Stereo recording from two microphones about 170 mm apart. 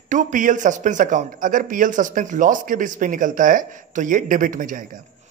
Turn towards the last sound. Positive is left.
turn(degrees=-50)  # may be behind; listen again after turning